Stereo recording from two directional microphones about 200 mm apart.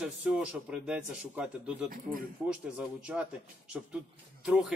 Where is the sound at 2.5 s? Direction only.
5° right (ahead or behind).